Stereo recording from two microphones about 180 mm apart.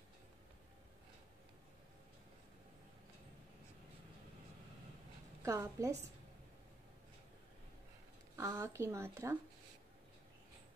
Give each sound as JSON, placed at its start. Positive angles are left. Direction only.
{"t": 5.4, "sound": "a woman's voice", "side_deg": -15}
{"t": 8.4, "sound": "a woman's voice", "side_deg": -15}